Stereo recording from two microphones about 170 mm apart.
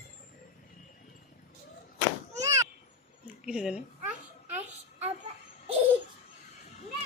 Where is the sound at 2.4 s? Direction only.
20° right (ahead or behind).